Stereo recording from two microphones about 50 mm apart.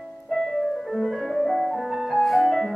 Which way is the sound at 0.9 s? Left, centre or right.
Centre.